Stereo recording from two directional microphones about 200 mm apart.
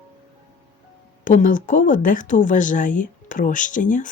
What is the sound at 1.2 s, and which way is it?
Speech, 40° left (ahead or behind).